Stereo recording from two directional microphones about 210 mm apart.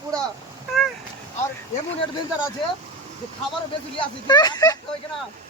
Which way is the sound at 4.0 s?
20° left (ahead or behind).